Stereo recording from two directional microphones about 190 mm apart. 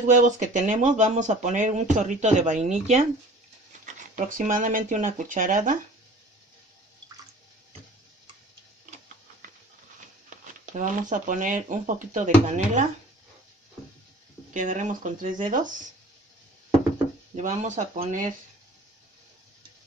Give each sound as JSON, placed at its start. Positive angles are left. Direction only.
{"t": 0.0, "sound": "speech", "side_deg": -40}
{"t": 10.6, "sound": "speech", "side_deg": -40}
{"t": 14.5, "sound": "speech", "side_deg": -40}
{"t": 17.4, "sound": "speech", "side_deg": -40}